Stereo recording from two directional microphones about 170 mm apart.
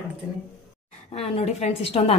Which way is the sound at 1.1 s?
35° left (ahead or behind).